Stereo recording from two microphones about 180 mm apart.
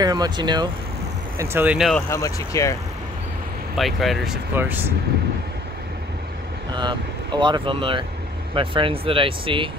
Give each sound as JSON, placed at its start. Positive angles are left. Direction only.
{"t": 0.0, "sound": "speech", "side_deg": -20}
{"t": 1.4, "sound": "speech", "side_deg": -10}
{"t": 2.0, "sound": "speech", "side_deg": 15}
{"t": 3.7, "sound": "speech", "side_deg": 0}
{"t": 6.7, "sound": "speech", "side_deg": -25}